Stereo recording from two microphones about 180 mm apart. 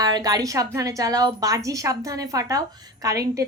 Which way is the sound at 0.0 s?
20° right (ahead or behind).